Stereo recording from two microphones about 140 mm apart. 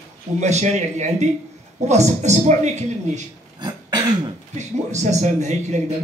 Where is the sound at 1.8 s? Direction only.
55° right (ahead or behind).